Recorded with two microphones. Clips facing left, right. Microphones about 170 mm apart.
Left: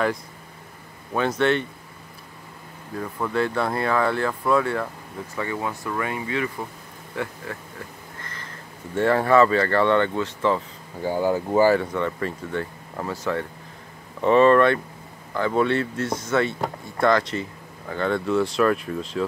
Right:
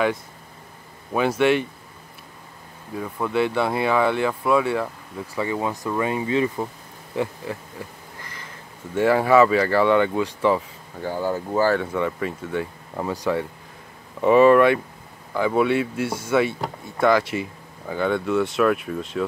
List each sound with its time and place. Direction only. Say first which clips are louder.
1.1 s speech: right 2 dB; 10° right (ahead or behind)
3.0 s speech: right 2 dB; 5° right (ahead or behind); by 6.7 s 25° right (ahead or behind)
8.9 s speech: right 1 dB; 5° right (ahead or behind)
11.0 s speech: left 3 dB; 15° left (ahead or behind)
11.8 s speech: right 1 dB; 5° right (ahead or behind)